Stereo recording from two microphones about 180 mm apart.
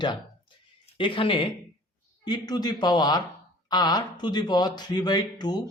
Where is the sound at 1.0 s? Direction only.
30° left (ahead or behind).